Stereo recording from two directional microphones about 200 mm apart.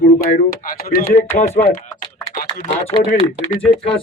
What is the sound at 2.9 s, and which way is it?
Speech, 30° right (ahead or behind).